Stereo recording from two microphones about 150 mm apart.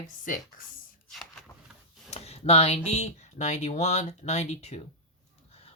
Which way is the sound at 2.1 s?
45° left (ahead or behind).